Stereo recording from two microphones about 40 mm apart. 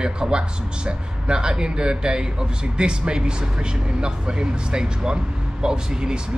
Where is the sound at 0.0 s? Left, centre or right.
Centre.